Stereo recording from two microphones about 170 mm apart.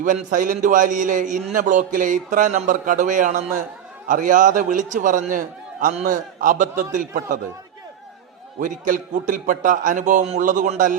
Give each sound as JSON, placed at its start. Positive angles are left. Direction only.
{"t": 0.0, "sound": "a man's voice", "side_deg": -50}
{"t": 8.5, "sound": "a man's voice", "side_deg": -50}